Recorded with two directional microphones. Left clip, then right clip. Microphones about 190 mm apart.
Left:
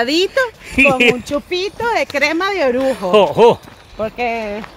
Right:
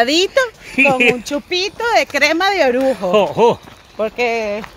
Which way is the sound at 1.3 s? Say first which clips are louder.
Even; 45° right (ahead or behind).